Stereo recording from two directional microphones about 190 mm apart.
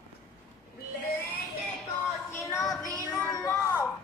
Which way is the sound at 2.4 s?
15° left (ahead or behind).